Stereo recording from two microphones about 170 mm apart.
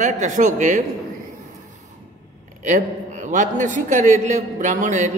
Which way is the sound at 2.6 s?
45° right (ahead or behind).